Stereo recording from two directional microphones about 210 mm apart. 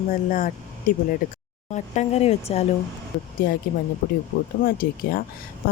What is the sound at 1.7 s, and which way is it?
Speech, 35° left (ahead or behind).